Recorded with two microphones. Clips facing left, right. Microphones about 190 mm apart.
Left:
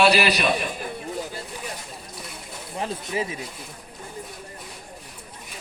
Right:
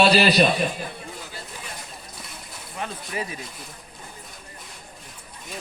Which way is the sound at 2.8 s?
25° left (ahead or behind).